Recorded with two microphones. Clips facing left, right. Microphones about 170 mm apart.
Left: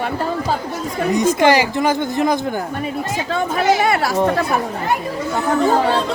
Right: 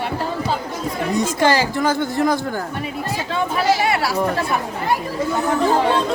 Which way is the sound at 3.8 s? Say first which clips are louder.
Left 2 dB; 50° left (ahead or behind).